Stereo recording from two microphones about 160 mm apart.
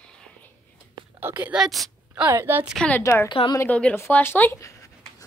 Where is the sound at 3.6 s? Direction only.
10° left (ahead or behind).